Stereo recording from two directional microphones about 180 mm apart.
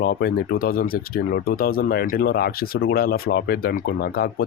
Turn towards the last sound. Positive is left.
turn(degrees=55)  # may be behind; listen again after turning